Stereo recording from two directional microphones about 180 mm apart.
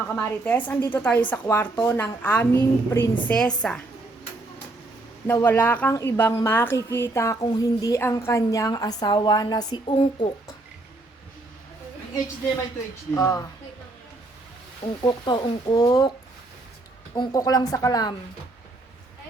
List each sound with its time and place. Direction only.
0.2 s a woman's voice: 10° left (ahead or behind)
5.2 s a woman's voice: 10° left (ahead or behind)
13.1 s speech: 20° left (ahead or behind)
15.0 s speech: 25° left (ahead or behind)
17.2 s speech: 20° left (ahead or behind)